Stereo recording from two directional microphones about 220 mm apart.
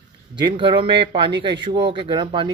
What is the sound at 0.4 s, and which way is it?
Speech, 20° right (ahead or behind).